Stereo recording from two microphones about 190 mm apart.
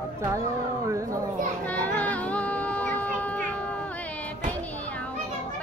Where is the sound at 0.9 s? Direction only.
15° right (ahead or behind).